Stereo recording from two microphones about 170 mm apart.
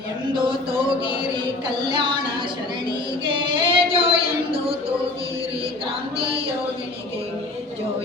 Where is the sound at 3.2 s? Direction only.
30° right (ahead or behind).